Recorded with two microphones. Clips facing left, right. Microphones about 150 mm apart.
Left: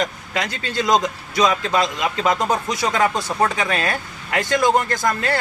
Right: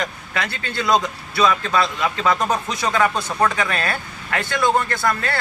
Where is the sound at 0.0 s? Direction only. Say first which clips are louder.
Left 2 dB; 20° left (ahead or behind).